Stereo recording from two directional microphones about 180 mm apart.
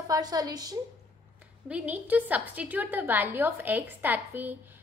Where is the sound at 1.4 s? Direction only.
10° right (ahead or behind).